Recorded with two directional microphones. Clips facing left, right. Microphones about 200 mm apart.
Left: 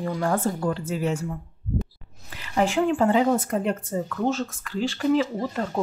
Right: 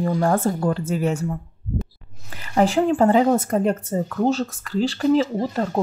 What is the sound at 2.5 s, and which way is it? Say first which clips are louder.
Speech: right 4 dB; 35° right (ahead or behind).